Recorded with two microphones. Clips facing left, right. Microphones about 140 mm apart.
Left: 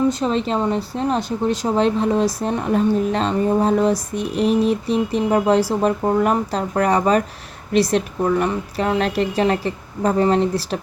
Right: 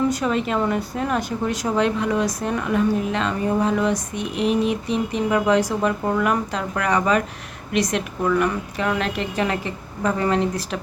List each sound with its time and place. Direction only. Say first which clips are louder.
0.1 s speech: left 2 dB; 25° left (ahead or behind)